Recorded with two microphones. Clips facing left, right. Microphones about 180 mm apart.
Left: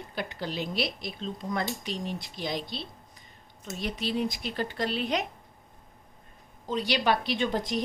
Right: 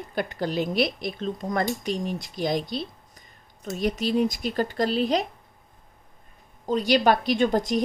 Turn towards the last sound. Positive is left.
turn(degrees=-45)  # may be behind; listen again after turning